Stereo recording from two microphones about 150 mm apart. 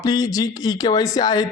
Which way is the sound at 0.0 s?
25° left (ahead or behind).